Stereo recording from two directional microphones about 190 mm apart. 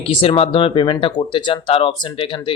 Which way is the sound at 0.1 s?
30° left (ahead or behind).